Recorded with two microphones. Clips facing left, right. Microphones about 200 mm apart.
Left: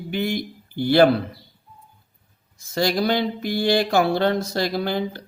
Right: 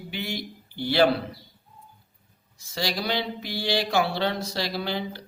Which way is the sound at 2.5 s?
50° left (ahead or behind).